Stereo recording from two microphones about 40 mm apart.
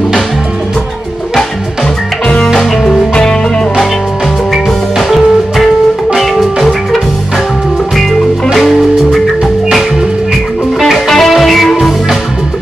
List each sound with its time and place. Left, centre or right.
3.2 s music: centre
4.9 s music: centre
8.5 s music: centre
10.8 s music: centre